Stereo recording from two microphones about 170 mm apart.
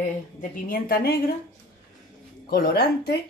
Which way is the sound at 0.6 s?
60° left (ahead or behind).